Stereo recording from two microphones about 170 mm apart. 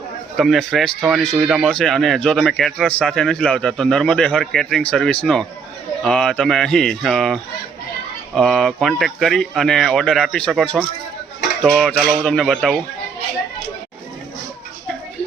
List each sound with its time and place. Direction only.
0.3 s speech: centre (ahead or behind)
8.4 s speech: centre (ahead or behind)